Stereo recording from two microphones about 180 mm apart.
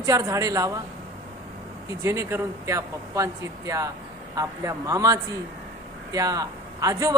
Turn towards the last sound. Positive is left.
turn(degrees=-20)  # may be behind; listen again after turning